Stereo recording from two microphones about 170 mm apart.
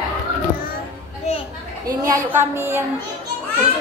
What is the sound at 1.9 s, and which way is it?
Speech, 15° right (ahead or behind).